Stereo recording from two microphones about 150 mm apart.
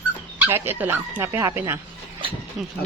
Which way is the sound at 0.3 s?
15° right (ahead or behind).